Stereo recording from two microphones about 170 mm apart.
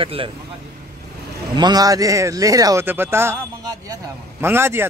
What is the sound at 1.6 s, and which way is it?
Speech, 25° right (ahead or behind).